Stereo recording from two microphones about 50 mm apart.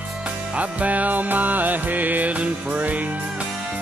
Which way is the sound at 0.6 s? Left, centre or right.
Right.